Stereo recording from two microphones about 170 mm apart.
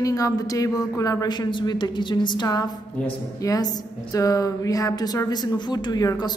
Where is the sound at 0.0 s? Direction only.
20° left (ahead or behind).